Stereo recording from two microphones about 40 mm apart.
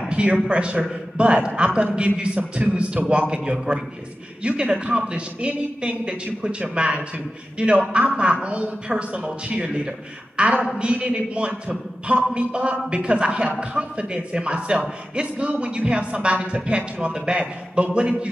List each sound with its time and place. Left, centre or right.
0.1 s a man's voice: right
5.9 s a man's voice: right